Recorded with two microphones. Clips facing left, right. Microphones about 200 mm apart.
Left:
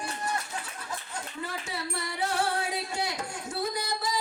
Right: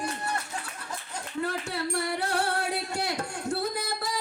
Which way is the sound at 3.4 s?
60° right (ahead or behind).